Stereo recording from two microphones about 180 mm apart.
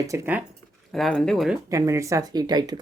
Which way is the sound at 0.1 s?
10° right (ahead or behind).